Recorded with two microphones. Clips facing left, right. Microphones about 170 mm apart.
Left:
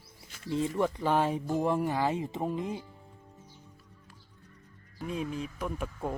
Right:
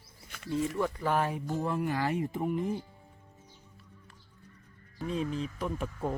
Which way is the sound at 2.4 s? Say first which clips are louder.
Right 1 dB; 20° left (ahead or behind).